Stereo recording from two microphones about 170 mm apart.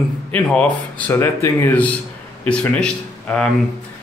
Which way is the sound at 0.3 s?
5° left (ahead or behind).